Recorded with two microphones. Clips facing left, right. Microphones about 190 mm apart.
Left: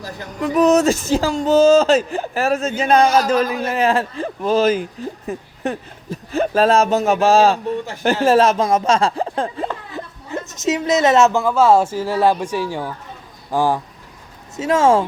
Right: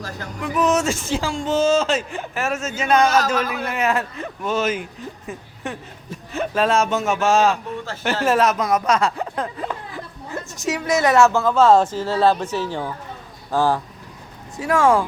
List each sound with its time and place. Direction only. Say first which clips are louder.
0.4 s speech: left 6 dB; 35° left (ahead or behind)